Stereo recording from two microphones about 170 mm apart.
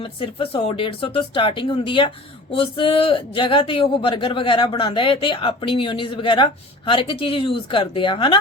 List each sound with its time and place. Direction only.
0.0 s speech: 35° left (ahead or behind)